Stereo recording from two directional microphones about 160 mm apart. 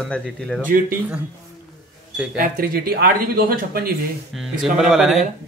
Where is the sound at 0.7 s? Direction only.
65° right (ahead or behind).